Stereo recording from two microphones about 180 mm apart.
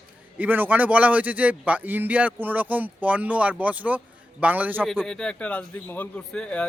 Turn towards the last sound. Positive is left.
turn(degrees=5)  # may be behind; listen again after turning